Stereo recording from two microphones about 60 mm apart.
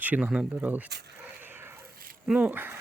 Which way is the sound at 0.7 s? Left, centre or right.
Right.